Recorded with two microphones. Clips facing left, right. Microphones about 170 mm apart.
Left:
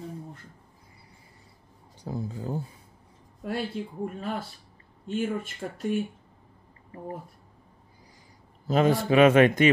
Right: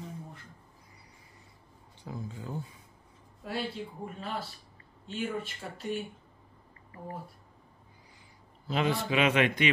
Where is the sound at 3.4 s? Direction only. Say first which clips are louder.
Left 4 dB; 50° left (ahead or behind).